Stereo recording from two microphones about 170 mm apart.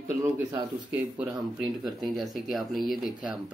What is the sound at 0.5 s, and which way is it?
Speech, 10° right (ahead or behind).